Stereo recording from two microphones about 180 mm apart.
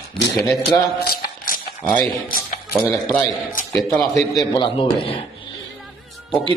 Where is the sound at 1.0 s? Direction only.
50° left (ahead or behind).